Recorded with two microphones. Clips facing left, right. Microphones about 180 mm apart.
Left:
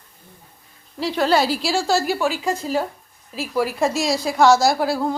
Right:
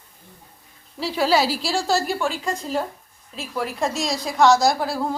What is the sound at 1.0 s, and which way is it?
A woman's voice, 5° right (ahead or behind).